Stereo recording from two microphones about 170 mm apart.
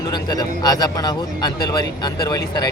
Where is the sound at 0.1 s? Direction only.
25° left (ahead or behind).